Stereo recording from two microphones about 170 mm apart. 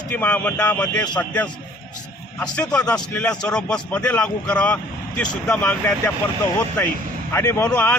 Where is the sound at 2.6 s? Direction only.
5° left (ahead or behind).